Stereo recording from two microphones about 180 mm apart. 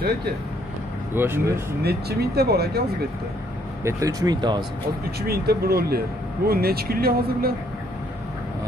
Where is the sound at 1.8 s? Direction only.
60° right (ahead or behind).